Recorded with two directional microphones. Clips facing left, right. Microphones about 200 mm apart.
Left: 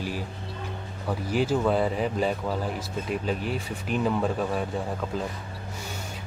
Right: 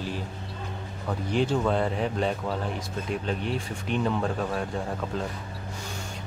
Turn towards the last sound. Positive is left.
turn(degrees=5)  # may be behind; listen again after turning